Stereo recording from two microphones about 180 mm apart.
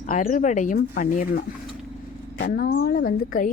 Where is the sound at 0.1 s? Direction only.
45° left (ahead or behind).